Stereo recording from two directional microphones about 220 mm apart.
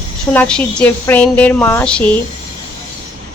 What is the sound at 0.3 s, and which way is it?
Speech, 5° left (ahead or behind).